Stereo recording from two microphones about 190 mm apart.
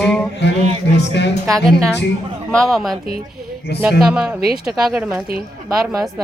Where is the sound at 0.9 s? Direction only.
65° left (ahead or behind).